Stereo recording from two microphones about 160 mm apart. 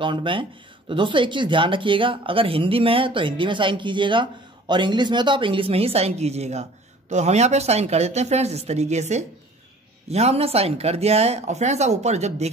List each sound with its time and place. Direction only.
0.0 s speech: 30° right (ahead or behind)